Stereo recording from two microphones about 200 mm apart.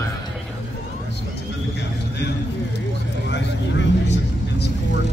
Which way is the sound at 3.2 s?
60° left (ahead or behind).